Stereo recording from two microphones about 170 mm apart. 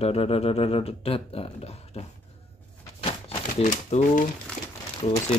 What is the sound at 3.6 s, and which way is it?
Speech, 45° left (ahead or behind).